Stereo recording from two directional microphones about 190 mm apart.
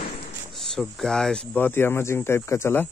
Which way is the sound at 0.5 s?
Centre (ahead or behind).